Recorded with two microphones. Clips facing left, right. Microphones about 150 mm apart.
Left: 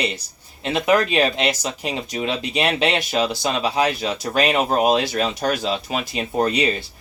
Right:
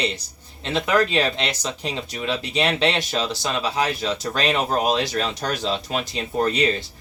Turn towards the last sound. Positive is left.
turn(degrees=15)  # may be behind; listen again after turning